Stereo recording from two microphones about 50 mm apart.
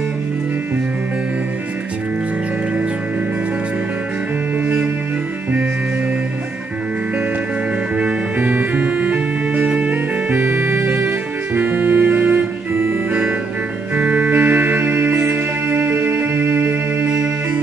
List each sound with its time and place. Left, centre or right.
8.4 s organ: right
9.7 s music: right
10.4 s music: right
10.8 s music: right
13.9 s music: right